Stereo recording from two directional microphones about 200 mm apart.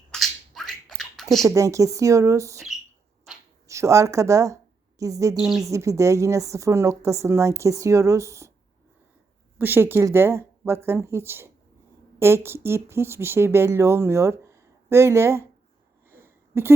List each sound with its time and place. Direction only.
0.1 s a sound: centre (ahead or behind)
1.5 s speech: 15° right (ahead or behind)
3.7 s a woman's voice: 15° right (ahead or behind)
5.4 s speech: centre (ahead or behind)
5.6 s speech: 15° right (ahead or behind)
9.6 s speech: 10° right (ahead or behind)
16.0 s a sound: 10° right (ahead or behind)